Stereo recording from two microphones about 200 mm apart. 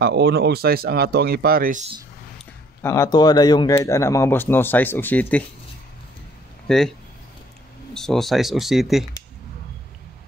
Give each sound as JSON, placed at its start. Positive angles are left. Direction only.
{"t": 0.0, "sound": "speech", "side_deg": -55}
{"t": 2.8, "sound": "a man's voice", "side_deg": 15}
{"t": 6.7, "sound": "speech", "side_deg": 0}
{"t": 7.9, "sound": "speech", "side_deg": 0}